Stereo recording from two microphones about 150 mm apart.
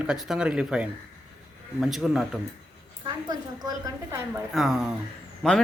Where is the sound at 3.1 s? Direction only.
25° right (ahead or behind).